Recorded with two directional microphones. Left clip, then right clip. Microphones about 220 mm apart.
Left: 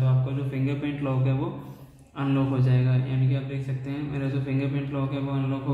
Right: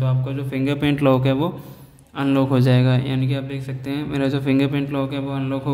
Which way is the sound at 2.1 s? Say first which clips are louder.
Right 8 dB; 50° right (ahead or behind).